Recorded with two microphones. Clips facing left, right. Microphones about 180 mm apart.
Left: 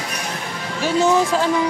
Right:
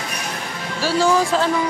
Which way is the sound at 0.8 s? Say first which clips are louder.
Left 1 dB; 20° left (ahead or behind).